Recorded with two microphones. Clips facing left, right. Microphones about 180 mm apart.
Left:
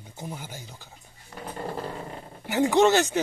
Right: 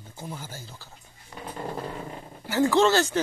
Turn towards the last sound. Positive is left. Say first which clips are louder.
# left 1 dB
turn(degrees=20)  # may be behind; listen again after turning